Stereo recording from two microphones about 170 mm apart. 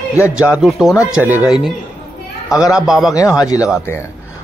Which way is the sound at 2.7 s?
5° right (ahead or behind).